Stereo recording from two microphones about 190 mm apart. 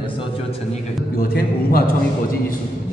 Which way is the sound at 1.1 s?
50° left (ahead or behind).